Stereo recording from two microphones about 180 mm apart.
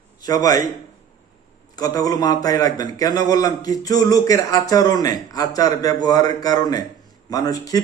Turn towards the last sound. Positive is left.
turn(degrees=20)  # may be behind; listen again after turning